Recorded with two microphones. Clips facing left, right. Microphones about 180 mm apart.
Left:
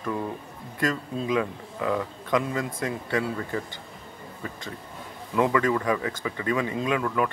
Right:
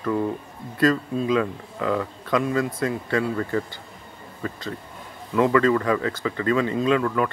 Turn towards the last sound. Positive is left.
turn(degrees=15)  # may be behind; listen again after turning